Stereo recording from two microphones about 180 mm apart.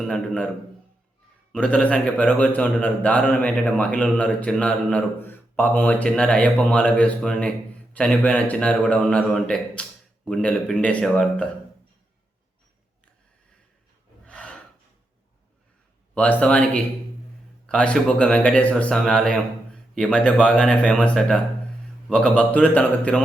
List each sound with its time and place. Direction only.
0.0 s speech: 5° left (ahead or behind)
1.5 s a man's voice: 5° left (ahead or behind)
14.3 s snort: 5° left (ahead or behind)
16.1 s a man's voice: 5° left (ahead or behind)